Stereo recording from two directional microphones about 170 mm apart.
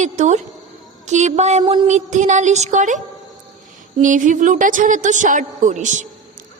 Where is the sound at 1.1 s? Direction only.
45° right (ahead or behind).